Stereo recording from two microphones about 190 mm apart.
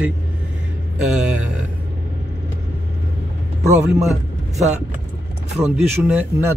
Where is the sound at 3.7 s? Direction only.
5° right (ahead or behind).